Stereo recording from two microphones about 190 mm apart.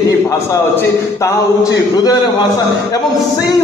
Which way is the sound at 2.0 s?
20° left (ahead or behind).